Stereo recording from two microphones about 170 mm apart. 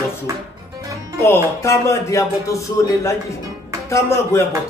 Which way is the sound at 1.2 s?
15° left (ahead or behind).